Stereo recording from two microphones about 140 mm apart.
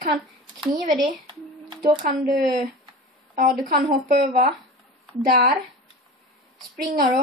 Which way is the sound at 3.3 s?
90° right.